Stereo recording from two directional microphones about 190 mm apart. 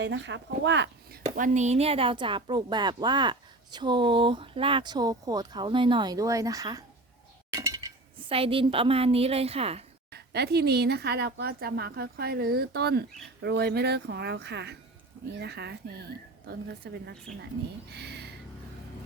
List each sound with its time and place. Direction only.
0.0 s speech: 70° right (ahead or behind)
1.4 s a woman's voice: 35° right (ahead or behind); by 6.8 s 20° right (ahead or behind)
7.5 s chink: 15° right (ahead or behind)
8.3 s a woman's voice: 30° right (ahead or behind)
10.1 s speech: 60° right (ahead or behind)